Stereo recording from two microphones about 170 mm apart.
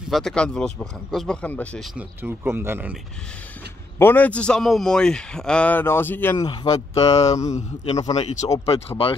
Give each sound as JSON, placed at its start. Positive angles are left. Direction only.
{"t": 0.1, "sound": "speech", "side_deg": 5}
{"t": 2.0, "sound": "speech", "side_deg": -15}
{"t": 4.0, "sound": "a man's voice", "side_deg": 10}
{"t": 6.3, "sound": "a man's voice", "side_deg": 25}
{"t": 7.0, "sound": "speech", "side_deg": 35}